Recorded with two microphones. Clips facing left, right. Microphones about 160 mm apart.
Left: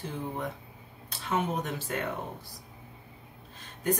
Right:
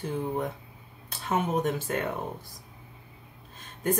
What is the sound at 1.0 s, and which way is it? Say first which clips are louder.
Speech: right 2 dB; 50° right (ahead or behind).